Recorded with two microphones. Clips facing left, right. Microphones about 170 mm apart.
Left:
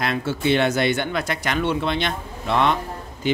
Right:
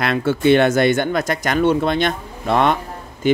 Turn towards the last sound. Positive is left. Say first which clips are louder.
# right 6 dB
turn(degrees=-50)  # may be behind; listen again after turning